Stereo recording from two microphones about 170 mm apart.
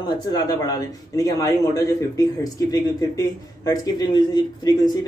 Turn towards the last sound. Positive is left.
turn(degrees=25)  # may be behind; listen again after turning